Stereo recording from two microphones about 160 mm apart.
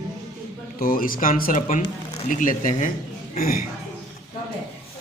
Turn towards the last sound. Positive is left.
turn(degrees=65)  # may be behind; listen again after turning